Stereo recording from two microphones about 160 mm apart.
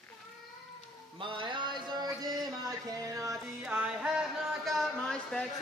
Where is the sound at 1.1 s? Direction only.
30° right (ahead or behind).